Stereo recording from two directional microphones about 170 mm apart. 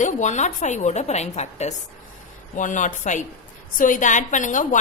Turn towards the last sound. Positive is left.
turn(degrees=50)  # may be behind; listen again after turning